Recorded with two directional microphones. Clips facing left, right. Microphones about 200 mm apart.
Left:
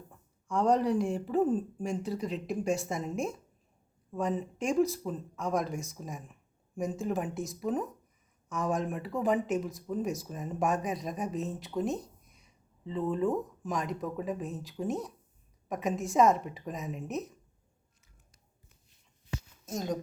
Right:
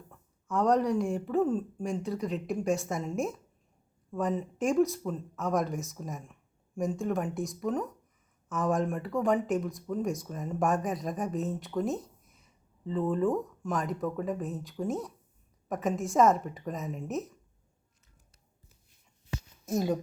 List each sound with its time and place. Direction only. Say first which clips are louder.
0.4 s speech: right 1 dB; centre (ahead or behind)
16.7 s speech: even; 15° left (ahead or behind)
19.6 s speech: right 5 dB; 10° right (ahead or behind)